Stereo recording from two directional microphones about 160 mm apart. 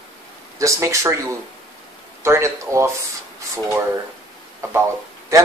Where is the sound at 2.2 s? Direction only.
15° right (ahead or behind).